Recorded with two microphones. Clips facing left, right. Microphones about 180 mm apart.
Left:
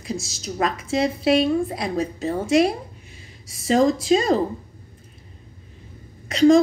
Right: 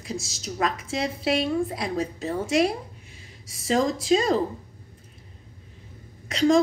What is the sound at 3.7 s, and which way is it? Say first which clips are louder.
Speech: left 4 dB; 40° left (ahead or behind).